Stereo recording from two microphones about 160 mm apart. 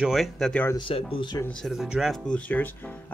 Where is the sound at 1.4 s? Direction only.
5° left (ahead or behind).